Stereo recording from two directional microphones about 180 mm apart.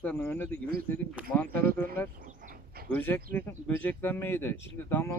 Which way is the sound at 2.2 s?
50° right (ahead or behind).